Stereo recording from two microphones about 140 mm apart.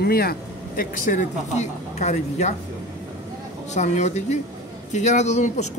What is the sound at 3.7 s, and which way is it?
A woman's voice, 55° left (ahead or behind).